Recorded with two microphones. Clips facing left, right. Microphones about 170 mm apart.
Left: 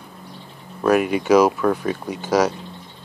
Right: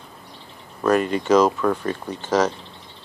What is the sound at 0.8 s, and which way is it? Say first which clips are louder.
Speech: left 2 dB; 10° left (ahead or behind).